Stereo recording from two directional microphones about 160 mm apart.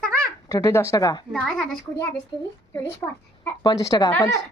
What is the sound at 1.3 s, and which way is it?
Speech, centre (ahead or behind).